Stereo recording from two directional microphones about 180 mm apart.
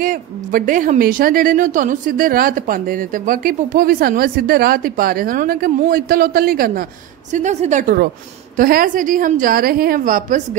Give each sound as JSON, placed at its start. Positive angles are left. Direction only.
{"t": 0.0, "sound": "a woman's voice", "side_deg": -50}
{"t": 7.3, "sound": "a woman's voice", "side_deg": -40}